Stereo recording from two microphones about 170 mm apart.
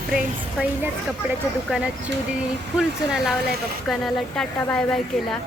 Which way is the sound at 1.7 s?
5° right (ahead or behind).